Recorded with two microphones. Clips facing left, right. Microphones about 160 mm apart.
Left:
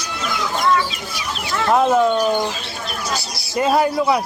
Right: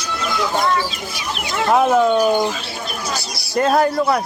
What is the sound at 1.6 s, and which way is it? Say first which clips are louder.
Speech: right 1 dB; 5° right (ahead or behind).